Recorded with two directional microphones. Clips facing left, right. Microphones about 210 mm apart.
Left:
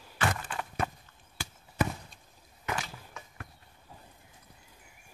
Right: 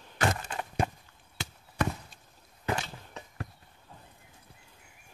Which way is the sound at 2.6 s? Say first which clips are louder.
Right 3 dB; 30° right (ahead or behind).